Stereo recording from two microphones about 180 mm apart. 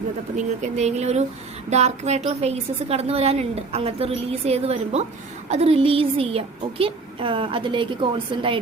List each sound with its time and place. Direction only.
0.3 s a woman's voice: 40° right (ahead or behind)